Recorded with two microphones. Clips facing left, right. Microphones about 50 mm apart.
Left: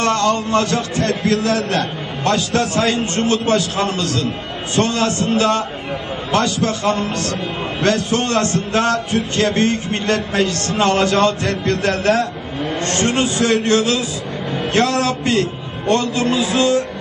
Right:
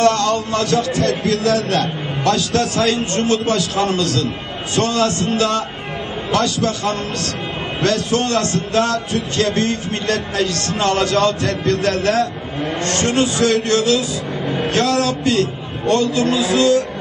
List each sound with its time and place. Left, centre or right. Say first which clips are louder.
0.0 s speech: right 1 dB; left